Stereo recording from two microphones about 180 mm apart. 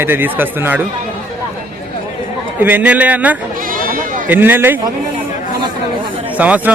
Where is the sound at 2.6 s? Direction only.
10° right (ahead or behind).